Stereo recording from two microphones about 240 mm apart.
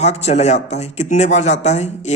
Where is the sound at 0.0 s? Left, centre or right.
Left.